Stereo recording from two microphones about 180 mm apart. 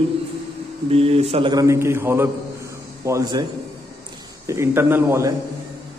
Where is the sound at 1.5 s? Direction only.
15° right (ahead or behind).